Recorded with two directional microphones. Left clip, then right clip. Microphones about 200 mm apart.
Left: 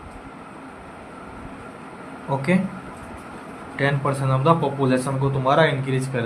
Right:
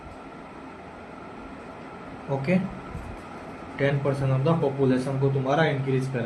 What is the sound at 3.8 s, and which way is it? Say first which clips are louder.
A man's voice: left 3 dB; 25° left (ahead or behind).